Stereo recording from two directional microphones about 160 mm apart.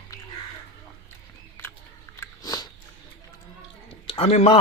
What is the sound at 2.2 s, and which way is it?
Biting, 25° left (ahead or behind).